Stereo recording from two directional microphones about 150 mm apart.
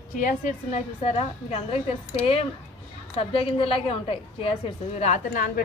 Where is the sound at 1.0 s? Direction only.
40° left (ahead or behind).